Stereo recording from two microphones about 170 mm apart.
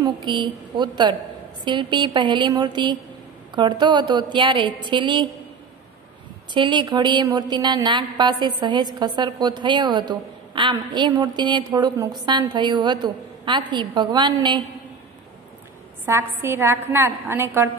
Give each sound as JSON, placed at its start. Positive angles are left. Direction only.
{"t": 0.0, "sound": "a woman's voice", "side_deg": -25}
{"t": 6.5, "sound": "a woman's voice", "side_deg": -25}
{"t": 16.1, "sound": "a woman's voice", "side_deg": -15}